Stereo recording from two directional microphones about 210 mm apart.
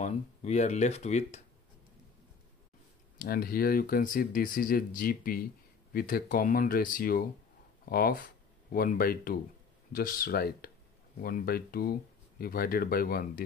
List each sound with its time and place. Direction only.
0.0 s speech: 35° left (ahead or behind)
3.2 s speech: 45° left (ahead or behind)